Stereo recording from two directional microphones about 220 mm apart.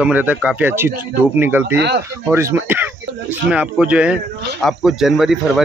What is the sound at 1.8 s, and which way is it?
Speech, 50° right (ahead or behind).